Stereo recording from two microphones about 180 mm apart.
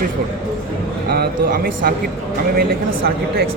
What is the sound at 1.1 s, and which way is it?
Speech, 55° right (ahead or behind).